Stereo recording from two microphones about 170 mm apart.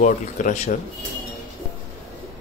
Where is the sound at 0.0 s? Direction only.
45° left (ahead or behind).